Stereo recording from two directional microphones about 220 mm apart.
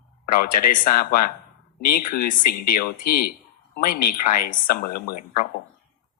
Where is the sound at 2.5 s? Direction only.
45° left (ahead or behind).